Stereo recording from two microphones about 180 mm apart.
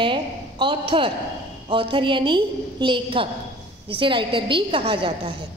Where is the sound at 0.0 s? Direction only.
25° right (ahead or behind).